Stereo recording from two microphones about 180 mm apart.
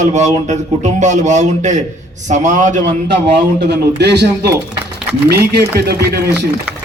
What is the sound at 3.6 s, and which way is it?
Speech, 70° right (ahead or behind).